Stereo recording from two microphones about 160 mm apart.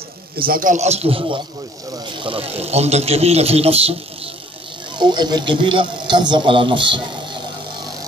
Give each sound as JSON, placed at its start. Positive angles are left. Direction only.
{"t": 0.4, "sound": "a man's voice", "side_deg": -60}
{"t": 4.9, "sound": "a man's voice", "side_deg": -25}